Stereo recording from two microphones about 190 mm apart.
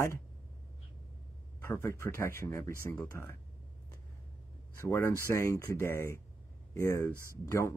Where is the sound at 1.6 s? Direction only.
15° left (ahead or behind).